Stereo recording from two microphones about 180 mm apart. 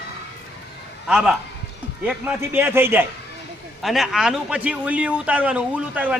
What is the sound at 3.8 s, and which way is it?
A man's voice, centre (ahead or behind).